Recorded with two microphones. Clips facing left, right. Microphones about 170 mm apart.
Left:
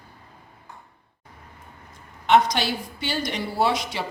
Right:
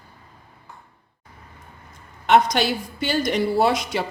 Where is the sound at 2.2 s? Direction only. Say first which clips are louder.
Right 2 dB; 50° right (ahead or behind).